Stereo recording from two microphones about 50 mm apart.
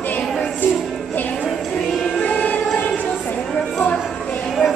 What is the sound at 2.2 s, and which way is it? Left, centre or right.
Music, left.